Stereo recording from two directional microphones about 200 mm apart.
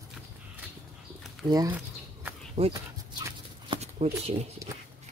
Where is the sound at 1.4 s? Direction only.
20° right (ahead or behind).